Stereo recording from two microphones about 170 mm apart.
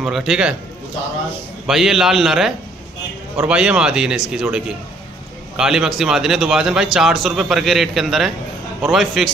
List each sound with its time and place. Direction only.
0.0 s a man's voice: centre (ahead or behind)
1.7 s a man's voice: centre (ahead or behind)